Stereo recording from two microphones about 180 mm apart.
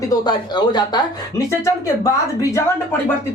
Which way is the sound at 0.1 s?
25° left (ahead or behind).